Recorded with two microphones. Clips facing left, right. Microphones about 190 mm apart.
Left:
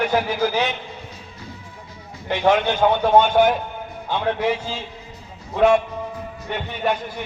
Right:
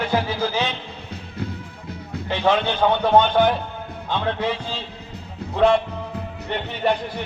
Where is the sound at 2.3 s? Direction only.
15° left (ahead or behind).